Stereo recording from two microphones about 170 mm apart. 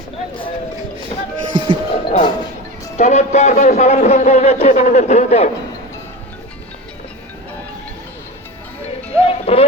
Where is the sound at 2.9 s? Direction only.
40° left (ahead or behind).